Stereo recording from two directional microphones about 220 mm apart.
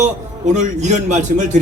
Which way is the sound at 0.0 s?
35° right (ahead or behind).